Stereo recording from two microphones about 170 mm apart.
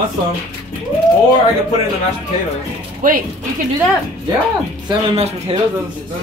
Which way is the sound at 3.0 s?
55° right (ahead or behind).